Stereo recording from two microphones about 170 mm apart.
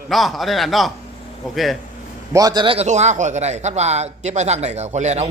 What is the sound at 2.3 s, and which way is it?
Speech, 25° right (ahead or behind).